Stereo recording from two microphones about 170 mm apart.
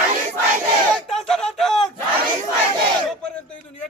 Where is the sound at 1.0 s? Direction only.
5° left (ahead or behind).